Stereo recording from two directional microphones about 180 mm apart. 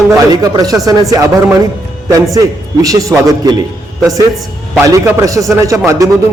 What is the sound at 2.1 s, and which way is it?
A man's voice, 20° right (ahead or behind).